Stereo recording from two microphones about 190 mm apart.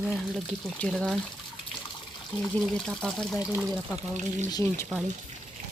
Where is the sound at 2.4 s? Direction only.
Centre (ahead or behind).